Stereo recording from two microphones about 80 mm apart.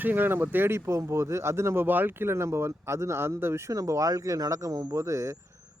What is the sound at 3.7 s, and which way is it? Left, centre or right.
Speech, right.